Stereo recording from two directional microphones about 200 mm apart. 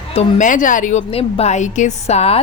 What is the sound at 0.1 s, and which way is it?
Speech, 35° left (ahead or behind).